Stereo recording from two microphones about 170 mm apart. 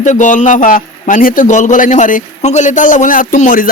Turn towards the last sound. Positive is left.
turn(degrees=50)  # may be behind; listen again after turning